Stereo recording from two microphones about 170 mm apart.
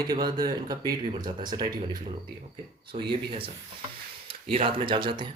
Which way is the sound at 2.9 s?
30° right (ahead or behind).